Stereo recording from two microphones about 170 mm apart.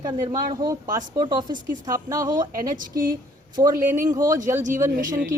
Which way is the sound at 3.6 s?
20° right (ahead or behind).